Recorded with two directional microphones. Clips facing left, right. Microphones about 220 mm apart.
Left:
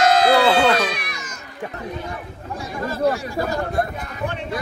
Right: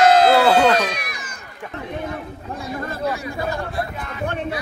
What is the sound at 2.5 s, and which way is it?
Chatter, 55° right (ahead or behind).